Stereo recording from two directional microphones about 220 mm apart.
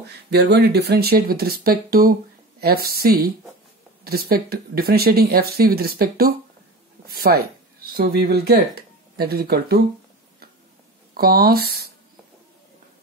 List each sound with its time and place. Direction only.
0.0 s speech: 50° right (ahead or behind)
11.1 s speech: 45° right (ahead or behind)